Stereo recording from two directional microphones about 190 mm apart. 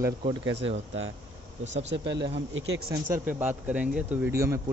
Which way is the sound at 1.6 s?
75° right (ahead or behind).